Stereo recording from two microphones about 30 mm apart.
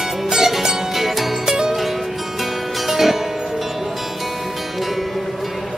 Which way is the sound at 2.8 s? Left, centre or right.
Centre.